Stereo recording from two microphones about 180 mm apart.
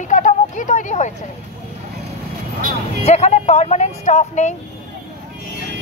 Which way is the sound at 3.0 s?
35° left (ahead or behind).